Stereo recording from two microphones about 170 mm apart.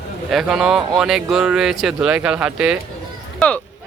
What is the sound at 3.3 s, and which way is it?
Speech, 10° left (ahead or behind).